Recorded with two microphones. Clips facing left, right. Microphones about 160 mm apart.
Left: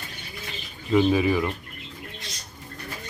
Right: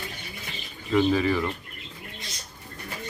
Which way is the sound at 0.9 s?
10° left (ahead or behind).